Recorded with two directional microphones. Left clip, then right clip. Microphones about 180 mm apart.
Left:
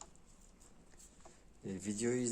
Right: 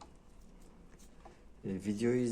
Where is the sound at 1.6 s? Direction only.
10° left (ahead or behind).